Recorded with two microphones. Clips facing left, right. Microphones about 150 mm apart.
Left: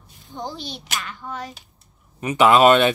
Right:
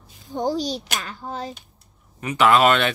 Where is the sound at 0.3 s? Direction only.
45° right (ahead or behind).